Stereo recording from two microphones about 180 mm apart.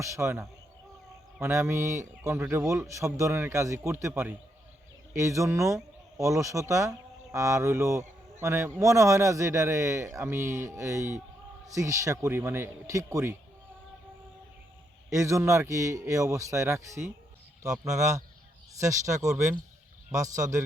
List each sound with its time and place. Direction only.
0.0 s speech: 15° right (ahead or behind)
15.1 s speech: 15° right (ahead or behind)